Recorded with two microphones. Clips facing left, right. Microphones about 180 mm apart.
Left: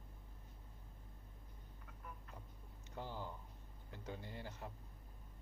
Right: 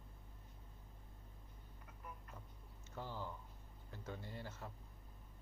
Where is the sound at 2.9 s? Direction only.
15° left (ahead or behind).